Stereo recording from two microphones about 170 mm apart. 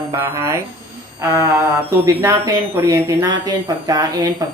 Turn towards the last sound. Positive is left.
turn(degrees=-25)  # may be behind; listen again after turning